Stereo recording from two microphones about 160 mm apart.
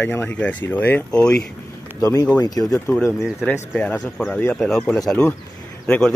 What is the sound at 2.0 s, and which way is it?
Speech, 20° left (ahead or behind).